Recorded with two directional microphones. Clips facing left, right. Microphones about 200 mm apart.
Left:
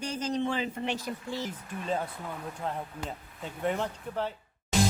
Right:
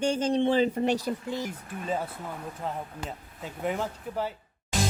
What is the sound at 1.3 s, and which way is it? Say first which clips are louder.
Speech: right 2 dB; 15° right (ahead or behind).